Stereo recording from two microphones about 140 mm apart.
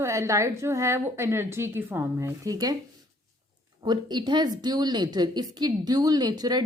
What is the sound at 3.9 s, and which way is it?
A woman's voice, 30° right (ahead or behind).